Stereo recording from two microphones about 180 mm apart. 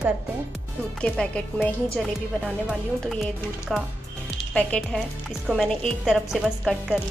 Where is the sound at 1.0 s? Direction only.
5° left (ahead or behind).